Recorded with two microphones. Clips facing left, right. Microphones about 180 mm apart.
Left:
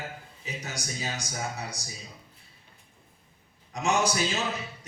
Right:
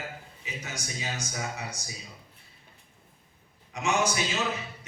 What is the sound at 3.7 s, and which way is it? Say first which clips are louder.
Speech: left 1 dB; 35° left (ahead or behind).